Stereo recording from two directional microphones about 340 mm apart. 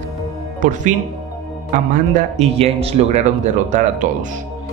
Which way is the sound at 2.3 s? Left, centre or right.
Centre.